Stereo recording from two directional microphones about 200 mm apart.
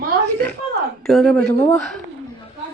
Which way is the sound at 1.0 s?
Centre (ahead or behind).